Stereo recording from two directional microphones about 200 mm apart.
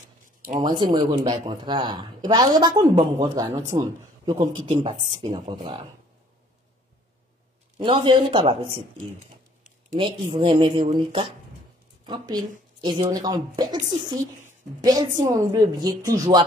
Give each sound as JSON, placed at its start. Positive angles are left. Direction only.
{"t": 0.6, "sound": "speech", "side_deg": -20}
{"t": 7.7, "sound": "speech", "side_deg": -25}
{"t": 12.1, "sound": "speech", "side_deg": -20}